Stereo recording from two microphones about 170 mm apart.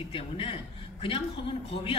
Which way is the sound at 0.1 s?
30° left (ahead or behind).